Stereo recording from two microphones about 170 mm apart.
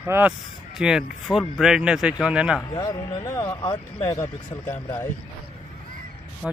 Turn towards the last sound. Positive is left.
turn(degrees=0)  # may be behind; listen again after turning